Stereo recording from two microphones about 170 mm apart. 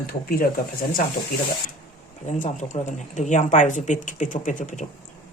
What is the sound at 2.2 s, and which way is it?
Speech, 45° left (ahead or behind).